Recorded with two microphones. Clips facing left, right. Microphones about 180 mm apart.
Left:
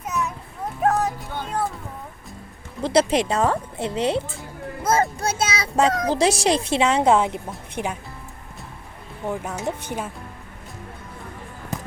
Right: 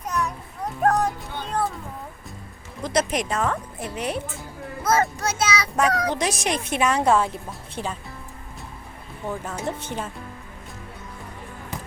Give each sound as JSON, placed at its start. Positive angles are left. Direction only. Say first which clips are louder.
{"t": 0.0, "sound": "a sound", "louder": "even", "side_deg": 5}
{"t": 0.8, "sound": "music", "louder": "even", "side_deg": 5}
{"t": 2.8, "sound": "a child's voice", "louder": "left 5 dB", "side_deg": 30}
{"t": 9.2, "sound": "speech", "louder": "left 2 dB", "side_deg": 15}